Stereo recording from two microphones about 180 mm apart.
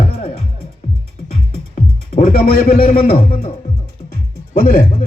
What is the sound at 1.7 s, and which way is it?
Music, 50° left (ahead or behind).